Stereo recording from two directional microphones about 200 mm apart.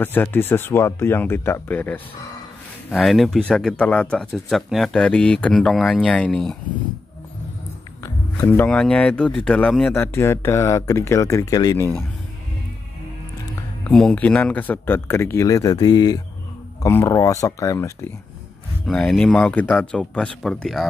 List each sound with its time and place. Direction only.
0.0 s speech: 10° left (ahead or behind)
8.0 s speech: 15° left (ahead or behind)
13.8 s speech: 5° left (ahead or behind)
18.9 s speech: 5° left (ahead or behind)